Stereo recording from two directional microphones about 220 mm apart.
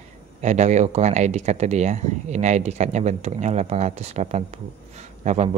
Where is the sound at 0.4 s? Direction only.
30° right (ahead or behind).